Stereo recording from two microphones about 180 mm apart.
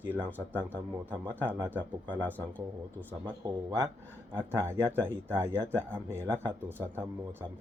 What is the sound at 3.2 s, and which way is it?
Speech, 25° right (ahead or behind).